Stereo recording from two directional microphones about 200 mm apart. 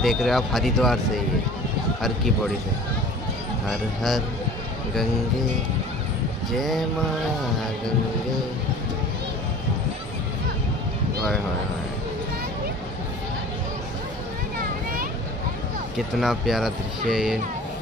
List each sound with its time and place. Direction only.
0.0 s speech: centre (ahead or behind)
3.6 s speech: centre (ahead or behind)
6.5 s speech: centre (ahead or behind)
14.6 s a sound: 45° right (ahead or behind)
16.2 s speech: centre (ahead or behind)